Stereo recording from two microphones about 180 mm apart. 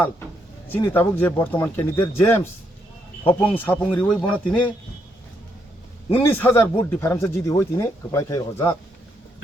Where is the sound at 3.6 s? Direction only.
10° left (ahead or behind).